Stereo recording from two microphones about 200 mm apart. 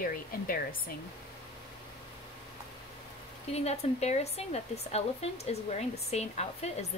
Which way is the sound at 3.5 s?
30° left (ahead or behind).